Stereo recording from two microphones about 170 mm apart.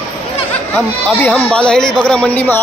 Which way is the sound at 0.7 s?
5° left (ahead or behind).